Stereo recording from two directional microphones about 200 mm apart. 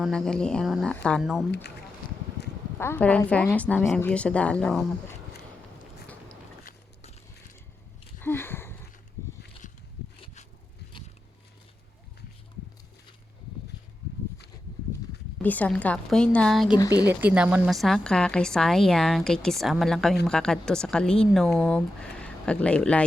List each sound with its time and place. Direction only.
0.0 s a woman's voice: 5° left (ahead or behind)
2.7 s a woman's voice: 10° left (ahead or behind)
8.2 s a sound: 10° left (ahead or behind)
9.6 s a sound: 40° left (ahead or behind)
15.4 s a woman's voice: 5° left (ahead or behind)
16.7 s speech: 20° left (ahead or behind)
17.0 s a woman's voice: 10° right (ahead or behind)